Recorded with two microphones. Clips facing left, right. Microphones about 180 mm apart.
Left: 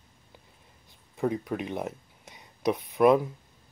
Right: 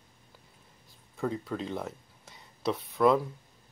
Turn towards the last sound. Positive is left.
turn(degrees=20)  # may be behind; listen again after turning